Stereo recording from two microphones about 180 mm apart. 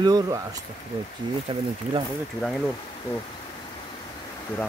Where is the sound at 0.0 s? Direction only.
20° right (ahead or behind).